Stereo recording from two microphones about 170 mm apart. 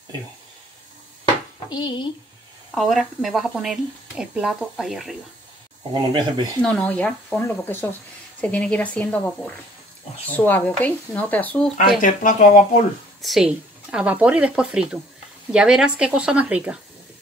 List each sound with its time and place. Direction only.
1.7 s speech: 25° left (ahead or behind)
2.7 s speech: centre (ahead or behind)
5.9 s speech: 25° right (ahead or behind)
6.6 s speech: 10° left (ahead or behind)
12.0 s speech: 50° left (ahead or behind)
13.2 s speech: centre (ahead or behind)